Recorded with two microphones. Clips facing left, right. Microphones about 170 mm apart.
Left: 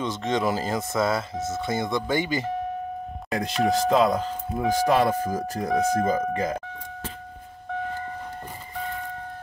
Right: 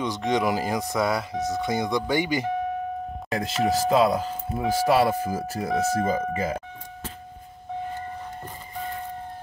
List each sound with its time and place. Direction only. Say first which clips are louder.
0.0 s speech: right 1 dB; 15° right (ahead or behind)
3.3 s speech: left 1 dB; centre (ahead or behind)